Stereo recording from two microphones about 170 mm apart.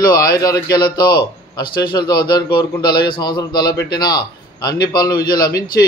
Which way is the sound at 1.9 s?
25° left (ahead or behind).